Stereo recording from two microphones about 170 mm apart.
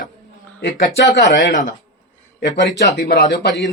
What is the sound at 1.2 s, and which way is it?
Speech, 90° left.